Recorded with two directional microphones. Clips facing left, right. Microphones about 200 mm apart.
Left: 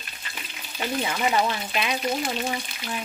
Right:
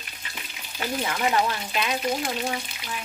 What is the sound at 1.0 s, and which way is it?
Speech, 15° left (ahead or behind).